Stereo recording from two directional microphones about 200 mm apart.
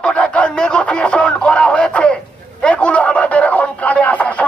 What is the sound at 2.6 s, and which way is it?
Radio, 5° left (ahead or behind).